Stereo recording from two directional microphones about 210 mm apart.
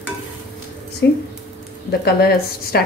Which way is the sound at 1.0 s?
55° left (ahead or behind).